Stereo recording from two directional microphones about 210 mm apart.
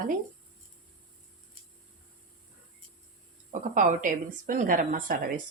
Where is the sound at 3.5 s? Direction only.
35° right (ahead or behind).